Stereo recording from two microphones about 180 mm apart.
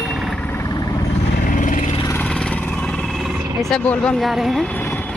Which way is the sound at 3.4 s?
15° right (ahead or behind).